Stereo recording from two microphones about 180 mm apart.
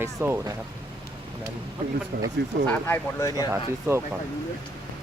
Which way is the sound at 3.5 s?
15° right (ahead or behind).